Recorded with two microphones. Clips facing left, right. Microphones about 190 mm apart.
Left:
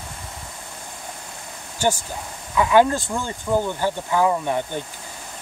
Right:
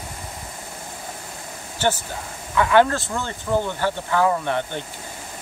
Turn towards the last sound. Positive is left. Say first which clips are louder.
# even
turn(degrees=10)  # may be behind; listen again after turning